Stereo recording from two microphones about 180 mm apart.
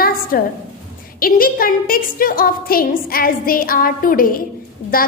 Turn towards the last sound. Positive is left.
turn(degrees=55)  # may be behind; listen again after turning